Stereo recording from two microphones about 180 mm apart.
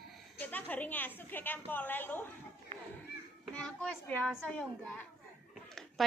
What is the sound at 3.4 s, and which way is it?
A child's voice, 5° left (ahead or behind).